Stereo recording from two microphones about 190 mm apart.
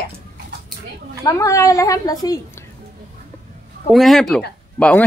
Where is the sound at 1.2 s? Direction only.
15° left (ahead or behind).